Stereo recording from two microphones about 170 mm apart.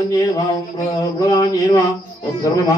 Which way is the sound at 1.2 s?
20° left (ahead or behind).